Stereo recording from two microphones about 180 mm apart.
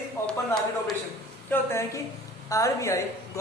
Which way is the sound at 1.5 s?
15° left (ahead or behind).